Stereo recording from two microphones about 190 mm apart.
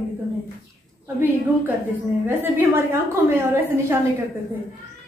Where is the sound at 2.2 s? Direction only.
10° right (ahead or behind).